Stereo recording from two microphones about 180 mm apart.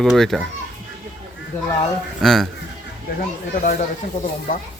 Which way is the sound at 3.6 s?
50° left (ahead or behind).